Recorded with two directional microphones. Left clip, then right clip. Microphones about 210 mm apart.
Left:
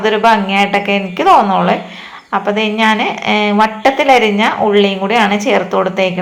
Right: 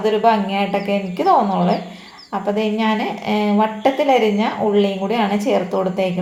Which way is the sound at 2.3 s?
5° left (ahead or behind).